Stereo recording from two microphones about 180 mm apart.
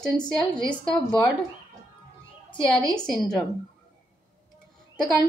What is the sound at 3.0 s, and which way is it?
Speech, centre (ahead or behind).